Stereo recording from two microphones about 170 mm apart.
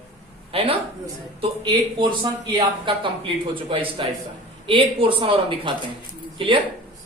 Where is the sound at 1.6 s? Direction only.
30° right (ahead or behind).